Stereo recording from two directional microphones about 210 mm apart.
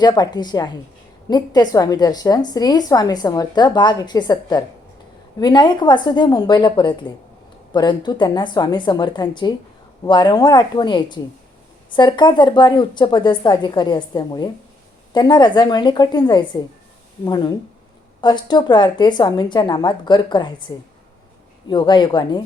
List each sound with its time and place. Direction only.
0.0 s a woman's voice: 20° left (ahead or behind)